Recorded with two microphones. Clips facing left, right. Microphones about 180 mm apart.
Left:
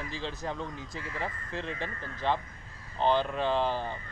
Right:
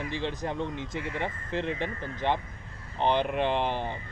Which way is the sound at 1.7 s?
20° right (ahead or behind).